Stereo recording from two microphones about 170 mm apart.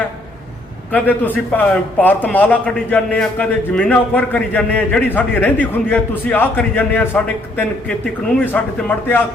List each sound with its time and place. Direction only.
0.9 s a man's voice: 10° left (ahead or behind)